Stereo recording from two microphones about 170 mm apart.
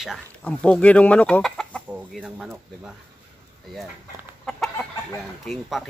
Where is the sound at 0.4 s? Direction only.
10° left (ahead or behind).